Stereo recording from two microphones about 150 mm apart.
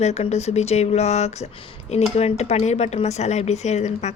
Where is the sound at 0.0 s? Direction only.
45° left (ahead or behind).